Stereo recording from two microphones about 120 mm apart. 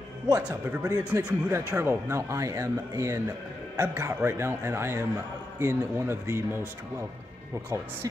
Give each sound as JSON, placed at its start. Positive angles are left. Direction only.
{"t": 0.8, "sound": "a man's voice", "side_deg": -20}